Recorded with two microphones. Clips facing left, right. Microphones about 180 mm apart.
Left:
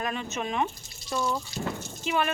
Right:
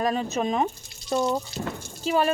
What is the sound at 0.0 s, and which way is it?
Speech, 35° right (ahead or behind).